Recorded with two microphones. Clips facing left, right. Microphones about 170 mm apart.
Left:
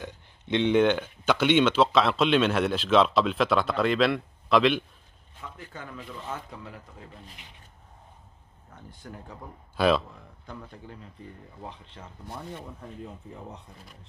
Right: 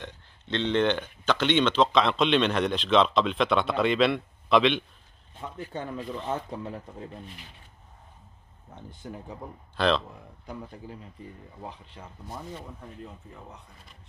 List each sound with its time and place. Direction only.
0.0 s speech: 10° left (ahead or behind)
5.4 s speech: 25° right (ahead or behind)
8.7 s speech: 20° right (ahead or behind)
9.8 s speech: 10° left (ahead or behind)
10.0 s speech: 15° right (ahead or behind)